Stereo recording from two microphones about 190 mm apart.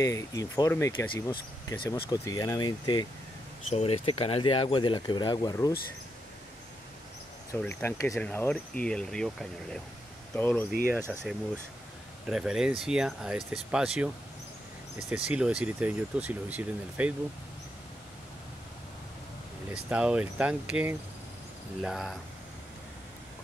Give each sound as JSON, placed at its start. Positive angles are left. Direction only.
{"t": 0.0, "sound": "speech", "side_deg": 15}
{"t": 7.6, "sound": "speech", "side_deg": 15}
{"t": 10.9, "sound": "speech", "side_deg": -10}
{"t": 19.7, "sound": "speech", "side_deg": -5}